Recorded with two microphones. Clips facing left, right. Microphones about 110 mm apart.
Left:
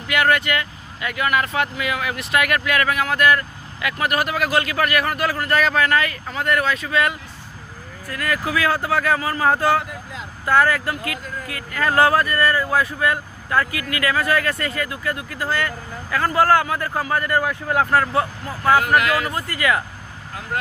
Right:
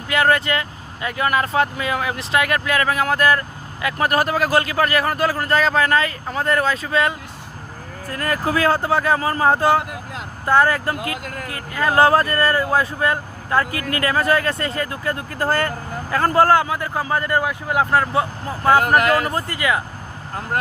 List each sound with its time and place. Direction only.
0.1 s speech: 30° right (ahead or behind)
9.9 s vehicle: 60° right (ahead or behind)
10.4 s speech: 25° right (ahead or behind)
11.2 s speech: 85° right
11.7 s speech: 15° right (ahead or behind)
18.8 s speech: 45° right (ahead or behind); by 19.8 s 20° right (ahead or behind)